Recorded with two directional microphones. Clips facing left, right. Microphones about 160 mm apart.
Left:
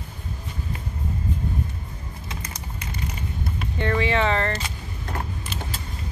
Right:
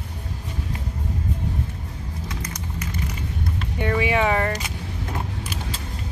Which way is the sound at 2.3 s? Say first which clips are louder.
Right 1 dB; 30° left (ahead or behind).